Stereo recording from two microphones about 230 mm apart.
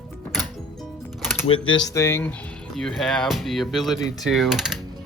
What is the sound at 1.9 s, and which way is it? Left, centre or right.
Speech, centre.